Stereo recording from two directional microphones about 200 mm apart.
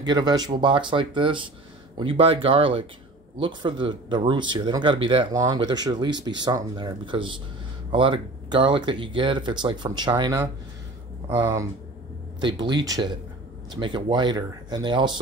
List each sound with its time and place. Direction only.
0.0 s speech: 20° right (ahead or behind)